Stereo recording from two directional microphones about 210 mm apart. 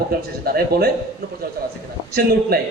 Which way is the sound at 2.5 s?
45° right (ahead or behind).